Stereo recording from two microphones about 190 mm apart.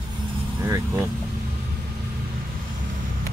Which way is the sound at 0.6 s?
15° right (ahead or behind).